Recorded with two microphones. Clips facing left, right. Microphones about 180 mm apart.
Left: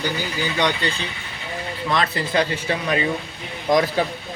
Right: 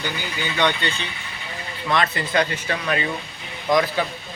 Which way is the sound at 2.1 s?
30° left (ahead or behind).